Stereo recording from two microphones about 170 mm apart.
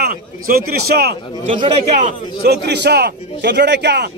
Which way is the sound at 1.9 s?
45° right (ahead or behind).